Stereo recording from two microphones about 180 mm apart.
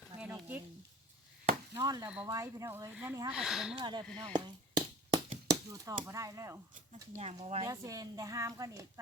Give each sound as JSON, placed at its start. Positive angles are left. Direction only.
{"t": 0.2, "sound": "a sound", "side_deg": -10}
{"t": 1.7, "sound": "a woman's voice", "side_deg": -20}
{"t": 2.0, "sound": "speech", "side_deg": -5}
{"t": 2.3, "sound": "speech", "side_deg": -15}
{"t": 3.8, "sound": "speech", "side_deg": -25}
{"t": 7.2, "sound": "speech", "side_deg": -35}
{"t": 7.7, "sound": "a woman's voice", "side_deg": -20}